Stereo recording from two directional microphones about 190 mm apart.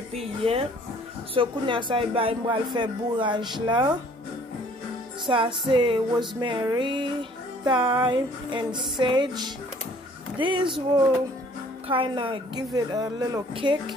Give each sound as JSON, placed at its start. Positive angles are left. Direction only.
{"t": 0.1, "sound": "music", "side_deg": -30}
{"t": 5.2, "sound": "music", "side_deg": -25}
{"t": 11.9, "sound": "music", "side_deg": -25}